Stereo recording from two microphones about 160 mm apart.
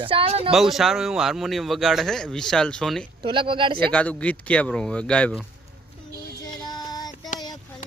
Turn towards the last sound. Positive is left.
turn(degrees=55)  # may be behind; listen again after turning